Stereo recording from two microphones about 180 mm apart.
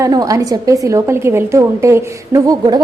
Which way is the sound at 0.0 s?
20° right (ahead or behind).